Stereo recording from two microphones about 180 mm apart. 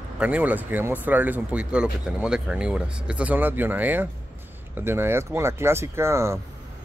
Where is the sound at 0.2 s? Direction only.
10° right (ahead or behind).